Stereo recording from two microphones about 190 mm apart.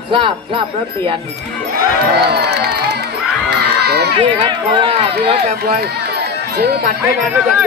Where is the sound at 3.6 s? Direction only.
60° right (ahead or behind).